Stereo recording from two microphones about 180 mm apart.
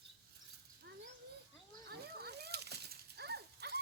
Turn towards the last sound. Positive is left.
turn(degrees=-65)  # may be behind; listen again after turning